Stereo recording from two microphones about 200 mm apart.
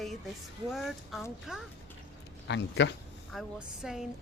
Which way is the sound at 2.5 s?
60° left (ahead or behind).